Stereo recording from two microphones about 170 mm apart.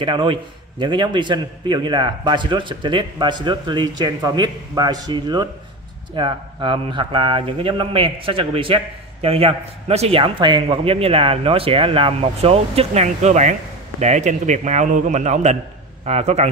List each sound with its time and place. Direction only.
0.0 s a man's voice: 30° right (ahead or behind)